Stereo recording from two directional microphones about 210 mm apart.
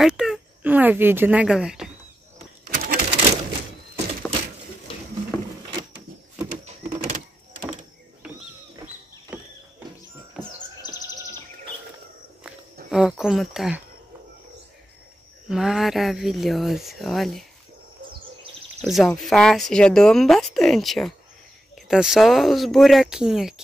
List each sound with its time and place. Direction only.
0.0 s speech: 5° right (ahead or behind)
2.6 s a sound: 45° right (ahead or behind)
6.6 s a sound: 35° right (ahead or behind)
10.8 s chirp: 20° left (ahead or behind)
12.9 s speech: centre (ahead or behind)
15.4 s speech: centre (ahead or behind)
18.8 s speech: centre (ahead or behind)